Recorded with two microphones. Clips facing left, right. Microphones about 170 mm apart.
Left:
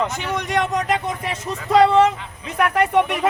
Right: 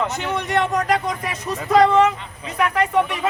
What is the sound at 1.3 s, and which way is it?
Speech, 30° left (ahead or behind).